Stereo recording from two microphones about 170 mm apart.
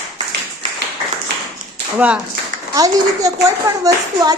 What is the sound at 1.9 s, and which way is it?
Speech, 5° right (ahead or behind).